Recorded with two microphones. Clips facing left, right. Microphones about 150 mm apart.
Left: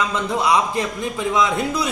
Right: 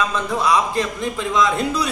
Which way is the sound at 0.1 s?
15° left (ahead or behind).